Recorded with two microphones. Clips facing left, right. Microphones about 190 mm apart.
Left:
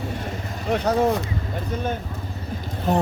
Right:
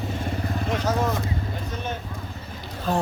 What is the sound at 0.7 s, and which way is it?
Speech, 60° left (ahead or behind).